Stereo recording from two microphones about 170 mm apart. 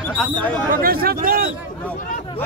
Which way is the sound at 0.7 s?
60° right (ahead or behind).